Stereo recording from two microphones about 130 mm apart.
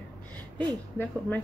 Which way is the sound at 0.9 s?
15° left (ahead or behind).